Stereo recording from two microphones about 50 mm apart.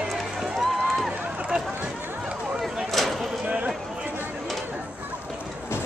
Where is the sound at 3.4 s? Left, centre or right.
Right.